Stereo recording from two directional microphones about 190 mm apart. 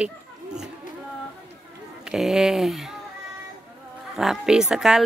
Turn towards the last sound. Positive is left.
turn(degrees=-5)  # may be behind; listen again after turning